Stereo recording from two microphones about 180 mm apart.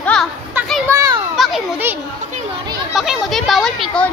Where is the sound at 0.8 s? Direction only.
20° right (ahead or behind).